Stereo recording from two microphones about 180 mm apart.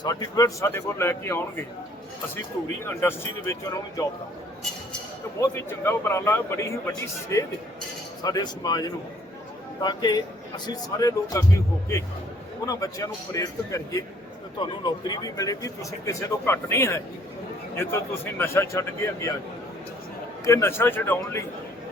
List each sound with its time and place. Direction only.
0.0 s a man's voice: 20° left (ahead or behind)
2.8 s a man's voice: 15° left (ahead or behind)
5.4 s a man's voice: 15° left (ahead or behind)
20.4 s a man's voice: 15° left (ahead or behind)